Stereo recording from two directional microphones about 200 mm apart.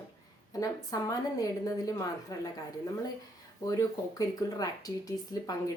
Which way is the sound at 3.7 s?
15° left (ahead or behind).